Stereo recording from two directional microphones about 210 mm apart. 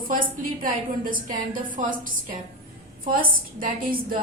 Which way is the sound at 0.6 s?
40° right (ahead or behind).